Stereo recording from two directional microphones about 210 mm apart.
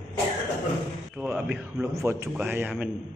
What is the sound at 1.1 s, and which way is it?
A man's voice, 5° right (ahead or behind).